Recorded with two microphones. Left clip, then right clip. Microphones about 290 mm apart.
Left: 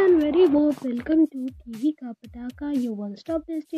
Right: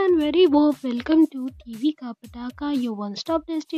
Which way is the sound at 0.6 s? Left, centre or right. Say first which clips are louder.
Right 2 dB; right.